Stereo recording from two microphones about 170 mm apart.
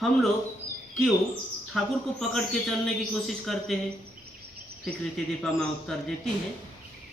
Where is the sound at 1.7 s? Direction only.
Centre (ahead or behind).